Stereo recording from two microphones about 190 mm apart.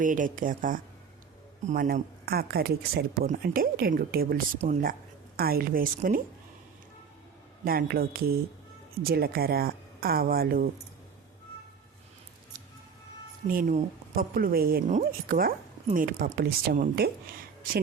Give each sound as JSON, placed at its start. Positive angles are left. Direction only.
{"t": 0.0, "sound": "speech", "side_deg": -45}
{"t": 7.6, "sound": "speech", "side_deg": -50}
{"t": 13.5, "sound": "speech", "side_deg": -45}